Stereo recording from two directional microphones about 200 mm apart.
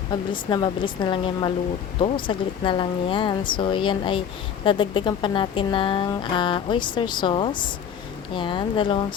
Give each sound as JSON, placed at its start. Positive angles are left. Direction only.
{"t": 0.1, "sound": "speech", "side_deg": 25}